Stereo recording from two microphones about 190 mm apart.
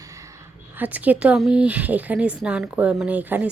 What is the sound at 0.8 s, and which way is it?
Speech, 10° right (ahead or behind).